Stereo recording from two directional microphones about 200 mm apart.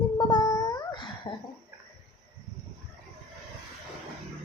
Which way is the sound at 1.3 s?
25° left (ahead or behind).